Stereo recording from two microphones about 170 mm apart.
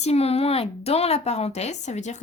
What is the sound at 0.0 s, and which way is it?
A woman's voice, 40° left (ahead or behind).